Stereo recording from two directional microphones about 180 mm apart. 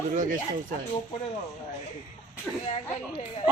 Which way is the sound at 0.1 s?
45° right (ahead or behind).